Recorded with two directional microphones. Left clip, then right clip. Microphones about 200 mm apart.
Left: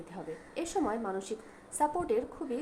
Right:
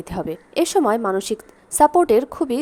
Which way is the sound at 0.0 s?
50° right (ahead or behind).